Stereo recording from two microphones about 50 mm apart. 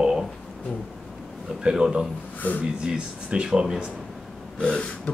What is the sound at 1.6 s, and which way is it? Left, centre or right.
Speech, centre.